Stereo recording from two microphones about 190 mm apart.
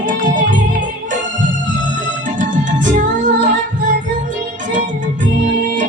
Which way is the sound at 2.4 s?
40° right (ahead or behind).